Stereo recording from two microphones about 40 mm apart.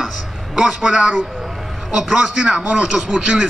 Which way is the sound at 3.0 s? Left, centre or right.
Right.